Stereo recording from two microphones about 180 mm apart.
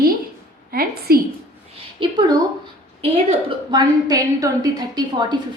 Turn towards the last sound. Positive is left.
turn(degrees=-25)  # may be behind; listen again after turning